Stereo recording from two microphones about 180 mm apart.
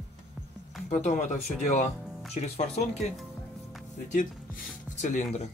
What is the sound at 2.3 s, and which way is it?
Speech, 40° left (ahead or behind).